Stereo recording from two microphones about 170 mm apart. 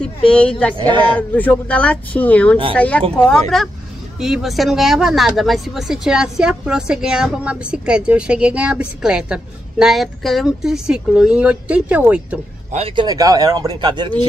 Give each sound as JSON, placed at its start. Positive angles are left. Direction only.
{"t": 0.0, "sound": "a man's voice", "side_deg": 5}
{"t": 12.7, "sound": "speech", "side_deg": -30}